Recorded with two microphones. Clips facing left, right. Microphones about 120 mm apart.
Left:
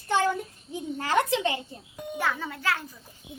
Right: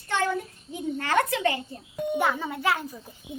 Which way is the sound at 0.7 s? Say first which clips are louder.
Right 1 dB; 25° left (ahead or behind).